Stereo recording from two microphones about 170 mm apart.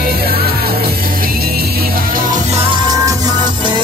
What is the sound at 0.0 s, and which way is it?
Music, 60° right (ahead or behind).